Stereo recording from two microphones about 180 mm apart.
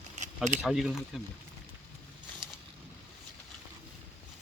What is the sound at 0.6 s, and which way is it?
Speech, 5° right (ahead or behind).